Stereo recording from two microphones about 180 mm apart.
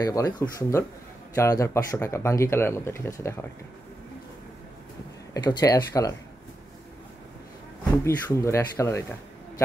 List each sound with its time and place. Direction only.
0.0 s speech: 20° left (ahead or behind)
5.3 s speech: 20° left (ahead or behind)
7.9 s speech: 15° left (ahead or behind)